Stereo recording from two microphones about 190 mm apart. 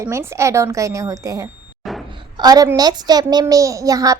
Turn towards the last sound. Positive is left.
turn(degrees=-20)  # may be behind; listen again after turning